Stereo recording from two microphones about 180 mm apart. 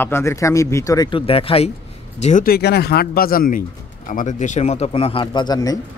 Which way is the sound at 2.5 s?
60° left (ahead or behind).